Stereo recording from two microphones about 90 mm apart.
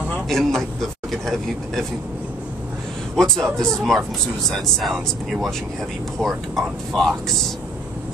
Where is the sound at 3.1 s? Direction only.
5° left (ahead or behind).